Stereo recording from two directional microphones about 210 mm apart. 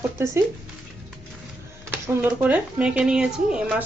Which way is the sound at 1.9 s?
10° right (ahead or behind).